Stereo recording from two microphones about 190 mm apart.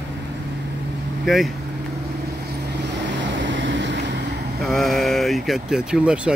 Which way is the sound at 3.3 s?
70° right (ahead or behind).